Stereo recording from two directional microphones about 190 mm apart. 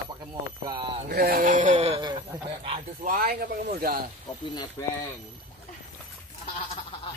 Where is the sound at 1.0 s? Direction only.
55° right (ahead or behind); by 2.1 s 30° right (ahead or behind).